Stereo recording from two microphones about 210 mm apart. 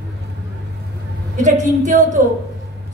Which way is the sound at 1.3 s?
35° right (ahead or behind).